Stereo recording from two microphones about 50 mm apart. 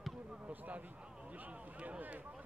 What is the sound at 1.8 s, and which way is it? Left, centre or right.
Speech, right.